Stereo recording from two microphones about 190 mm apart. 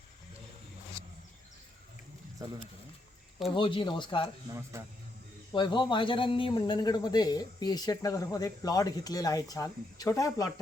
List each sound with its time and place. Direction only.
3.5 s speech: 25° left (ahead or behind)
4.4 s a man's voice: 15° right (ahead or behind)
5.5 s speech: 25° left (ahead or behind)